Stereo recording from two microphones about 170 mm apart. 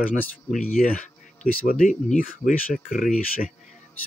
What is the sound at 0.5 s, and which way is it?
Speech, 50° left (ahead or behind).